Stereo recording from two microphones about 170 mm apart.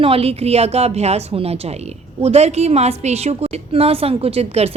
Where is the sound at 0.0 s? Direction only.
35° right (ahead or behind).